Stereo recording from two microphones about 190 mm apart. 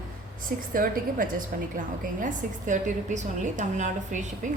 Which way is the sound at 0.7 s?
50° right (ahead or behind).